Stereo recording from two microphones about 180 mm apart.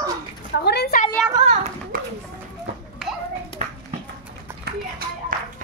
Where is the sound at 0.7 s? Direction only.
65° left (ahead or behind).